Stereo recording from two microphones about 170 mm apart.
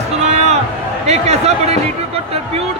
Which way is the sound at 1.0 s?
40° right (ahead or behind).